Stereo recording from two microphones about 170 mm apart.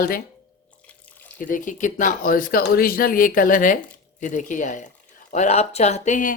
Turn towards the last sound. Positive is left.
turn(degrees=45)  # may be behind; listen again after turning